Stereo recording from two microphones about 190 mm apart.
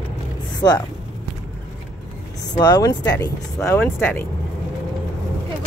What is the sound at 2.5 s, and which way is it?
Speech, 20° left (ahead or behind).